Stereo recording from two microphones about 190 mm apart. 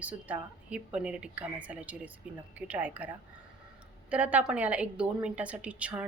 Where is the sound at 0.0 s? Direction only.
10° right (ahead or behind).